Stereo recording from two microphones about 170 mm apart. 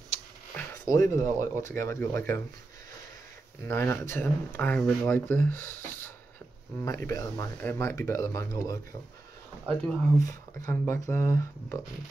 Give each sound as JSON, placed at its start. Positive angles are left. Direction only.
{"t": 0.6, "sound": "speech", "side_deg": 20}
{"t": 3.6, "sound": "speech", "side_deg": 15}
{"t": 10.1, "sound": "speech", "side_deg": 20}